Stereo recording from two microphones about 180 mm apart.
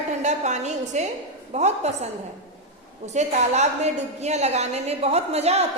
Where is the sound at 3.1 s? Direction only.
40° right (ahead or behind).